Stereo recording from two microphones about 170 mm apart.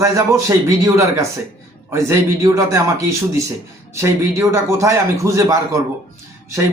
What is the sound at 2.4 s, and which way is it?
Speech, 20° right (ahead or behind).